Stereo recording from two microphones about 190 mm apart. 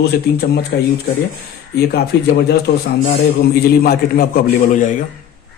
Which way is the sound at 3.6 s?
55° left (ahead or behind).